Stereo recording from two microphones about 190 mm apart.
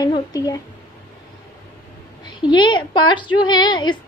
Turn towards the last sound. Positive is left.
turn(degrees=25)  # may be behind; listen again after turning